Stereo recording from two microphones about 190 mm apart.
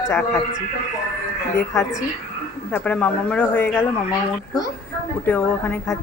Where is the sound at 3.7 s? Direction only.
20° left (ahead or behind).